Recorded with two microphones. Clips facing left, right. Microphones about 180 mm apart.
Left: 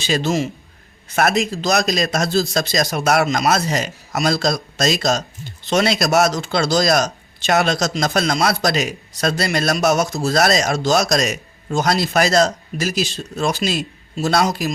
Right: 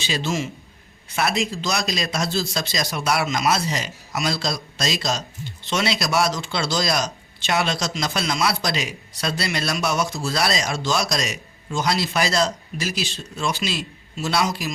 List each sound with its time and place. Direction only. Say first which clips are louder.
0.1 s a man's voice: left 6 dB; 40° left (ahead or behind)